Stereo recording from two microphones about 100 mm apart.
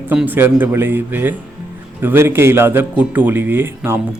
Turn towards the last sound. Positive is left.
turn(degrees=-25)  # may be behind; listen again after turning